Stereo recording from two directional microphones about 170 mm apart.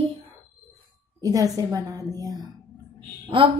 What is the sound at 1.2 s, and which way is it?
A woman's voice, 20° right (ahead or behind).